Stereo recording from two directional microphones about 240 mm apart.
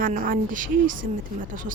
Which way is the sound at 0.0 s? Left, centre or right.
Right.